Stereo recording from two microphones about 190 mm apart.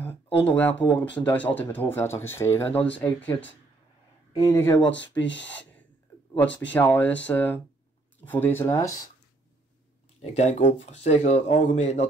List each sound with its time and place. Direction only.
0.0 s a sound: 30° left (ahead or behind)
0.6 s speech: 10° left (ahead or behind)
6.4 s speech: 10° left (ahead or behind)
10.2 s speech: 35° left (ahead or behind)